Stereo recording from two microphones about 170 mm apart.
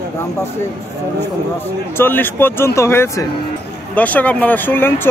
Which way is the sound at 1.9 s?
10° left (ahead or behind).